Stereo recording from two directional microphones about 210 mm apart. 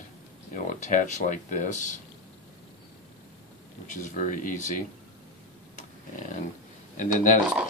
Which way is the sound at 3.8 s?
35° left (ahead or behind).